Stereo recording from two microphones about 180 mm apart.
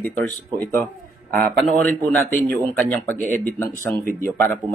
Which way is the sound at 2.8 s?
10° left (ahead or behind).